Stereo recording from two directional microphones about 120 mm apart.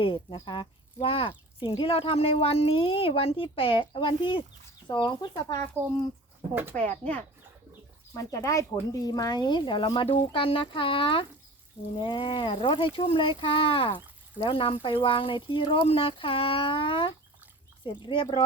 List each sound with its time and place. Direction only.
0.0 s speech: 45° left (ahead or behind)
6.5 s speech: 20° right (ahead or behind)
6.7 s speech: 15° left (ahead or behind)
8.1 s speech: 25° left (ahead or behind); by 18.4 s 50° left (ahead or behind)